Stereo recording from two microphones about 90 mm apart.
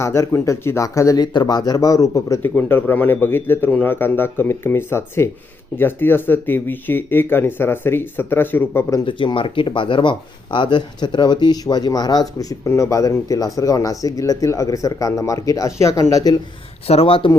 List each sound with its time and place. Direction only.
0.0 s speech: 30° left (ahead or behind)
1.2 s speech: 55° left (ahead or behind)
2.4 s speech: 25° left (ahead or behind)
9.0 s speech: 70° left (ahead or behind); by 16.4 s 40° left (ahead or behind)
16.8 s speech: 90° left